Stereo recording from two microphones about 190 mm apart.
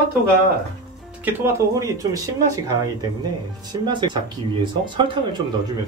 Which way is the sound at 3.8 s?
25° right (ahead or behind).